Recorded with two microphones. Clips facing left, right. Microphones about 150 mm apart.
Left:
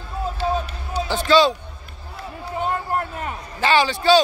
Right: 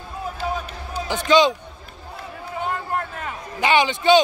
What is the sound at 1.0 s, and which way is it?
Speech, 20° right (ahead or behind).